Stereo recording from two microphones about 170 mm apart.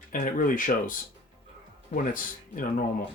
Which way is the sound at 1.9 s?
55° left (ahead or behind).